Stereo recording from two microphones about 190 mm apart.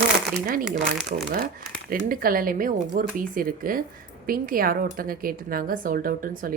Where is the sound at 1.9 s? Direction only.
50° right (ahead or behind).